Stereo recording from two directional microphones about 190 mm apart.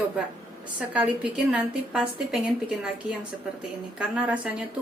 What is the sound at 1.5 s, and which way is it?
A woman's voice, 5° right (ahead or behind).